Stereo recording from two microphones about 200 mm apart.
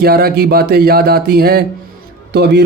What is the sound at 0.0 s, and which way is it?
A man's voice, 50° right (ahead or behind).